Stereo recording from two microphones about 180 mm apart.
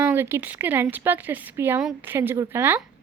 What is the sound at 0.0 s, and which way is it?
A woman's voice, 10° right (ahead or behind).